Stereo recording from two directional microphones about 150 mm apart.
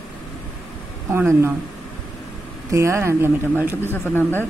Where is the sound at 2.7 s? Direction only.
20° right (ahead or behind).